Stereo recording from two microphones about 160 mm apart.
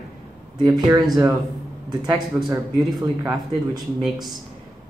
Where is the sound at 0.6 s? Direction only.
25° right (ahead or behind).